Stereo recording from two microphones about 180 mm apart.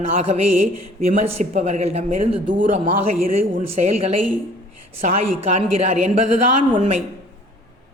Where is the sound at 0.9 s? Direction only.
35° right (ahead or behind).